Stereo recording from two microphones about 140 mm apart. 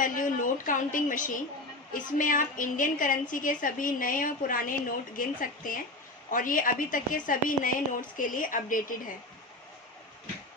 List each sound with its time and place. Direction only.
0.0 s a woman's voice: 70° left (ahead or behind)